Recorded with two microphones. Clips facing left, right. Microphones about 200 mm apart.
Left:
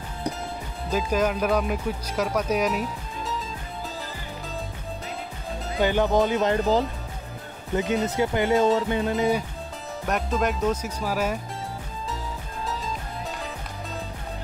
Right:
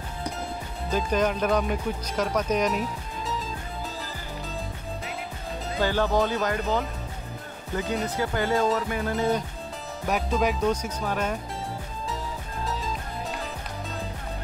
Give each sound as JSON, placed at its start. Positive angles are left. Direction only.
{"t": 0.8, "sound": "speech", "side_deg": 5}
{"t": 5.8, "sound": "speech", "side_deg": 20}
{"t": 6.6, "sound": "speech", "side_deg": 35}
{"t": 7.7, "sound": "speech", "side_deg": 20}
{"t": 10.0, "sound": "speech", "side_deg": 0}
{"t": 12.6, "sound": "music", "side_deg": 0}